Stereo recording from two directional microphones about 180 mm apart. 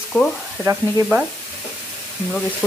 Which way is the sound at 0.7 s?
10° right (ahead or behind).